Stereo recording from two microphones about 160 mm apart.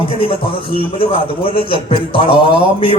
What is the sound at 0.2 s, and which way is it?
Speech, 35° left (ahead or behind).